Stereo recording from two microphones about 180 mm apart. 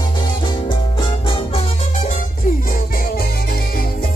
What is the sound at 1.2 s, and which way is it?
Music, 30° left (ahead or behind).